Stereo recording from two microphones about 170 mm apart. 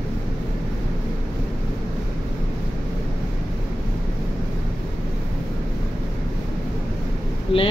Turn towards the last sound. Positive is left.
turn(degrees=35)  # may be behind; listen again after turning